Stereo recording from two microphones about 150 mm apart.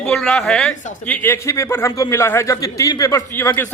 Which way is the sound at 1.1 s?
15° left (ahead or behind).